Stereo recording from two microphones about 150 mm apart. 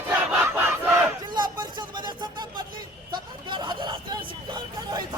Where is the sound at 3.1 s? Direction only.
30° right (ahead or behind).